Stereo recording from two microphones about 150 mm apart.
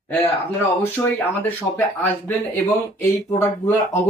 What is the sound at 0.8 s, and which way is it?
Speech, 15° left (ahead or behind).